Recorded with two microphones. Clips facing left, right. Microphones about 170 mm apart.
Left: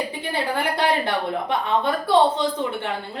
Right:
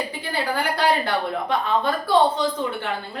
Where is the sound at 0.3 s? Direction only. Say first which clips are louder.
Even; 25° left (ahead or behind).